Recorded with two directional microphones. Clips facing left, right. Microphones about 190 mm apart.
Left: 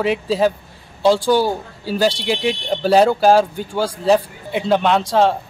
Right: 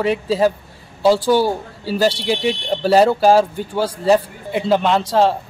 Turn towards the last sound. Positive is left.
turn(degrees=-5)  # may be behind; listen again after turning